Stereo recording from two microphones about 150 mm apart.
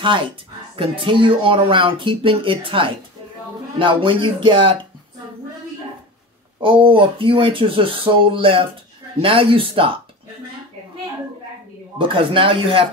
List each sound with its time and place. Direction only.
0.7 s speech: 35° right (ahead or behind)
6.6 s speech: 35° right (ahead or behind)
12.0 s speech: 35° right (ahead or behind)